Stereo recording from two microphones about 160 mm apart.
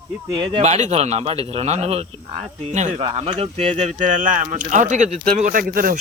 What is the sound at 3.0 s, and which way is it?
Speech, 40° right (ahead or behind).